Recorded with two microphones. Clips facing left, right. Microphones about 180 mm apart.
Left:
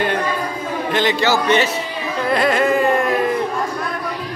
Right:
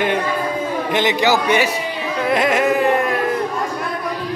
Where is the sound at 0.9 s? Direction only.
15° right (ahead or behind).